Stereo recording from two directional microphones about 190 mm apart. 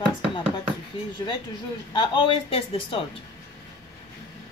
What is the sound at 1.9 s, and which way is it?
Speech, 25° left (ahead or behind).